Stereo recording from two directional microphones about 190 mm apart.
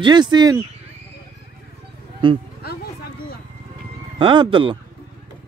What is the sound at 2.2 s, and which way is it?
Speech, 25° right (ahead or behind).